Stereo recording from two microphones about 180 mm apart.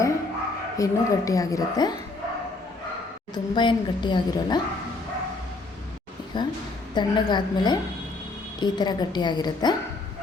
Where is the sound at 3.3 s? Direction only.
25° left (ahead or behind).